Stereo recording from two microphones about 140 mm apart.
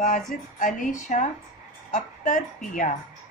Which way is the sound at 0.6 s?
70° left (ahead or behind).